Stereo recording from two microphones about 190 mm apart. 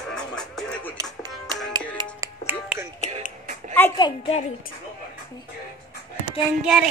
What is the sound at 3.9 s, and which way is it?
Speech, 25° left (ahead or behind).